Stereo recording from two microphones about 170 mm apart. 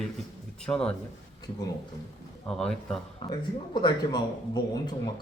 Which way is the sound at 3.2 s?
25° left (ahead or behind).